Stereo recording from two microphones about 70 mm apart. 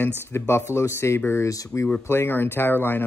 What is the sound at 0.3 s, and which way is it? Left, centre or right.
Speech, left.